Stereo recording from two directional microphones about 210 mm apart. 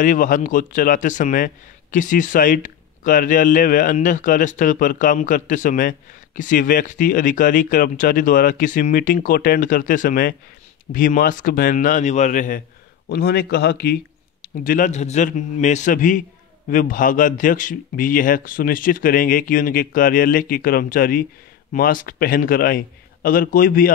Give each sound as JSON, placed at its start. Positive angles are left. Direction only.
{"t": 0.0, "sound": "speech", "side_deg": 40}
{"t": 13.1, "sound": "a man's voice", "side_deg": 50}
{"t": 14.6, "sound": "a man's voice", "side_deg": 40}